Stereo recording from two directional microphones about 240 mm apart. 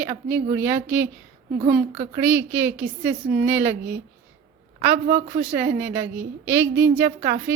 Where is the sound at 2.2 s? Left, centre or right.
Centre.